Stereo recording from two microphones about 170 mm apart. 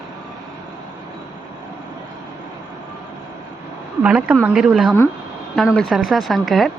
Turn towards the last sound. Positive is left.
turn(degrees=0)  # may be behind; listen again after turning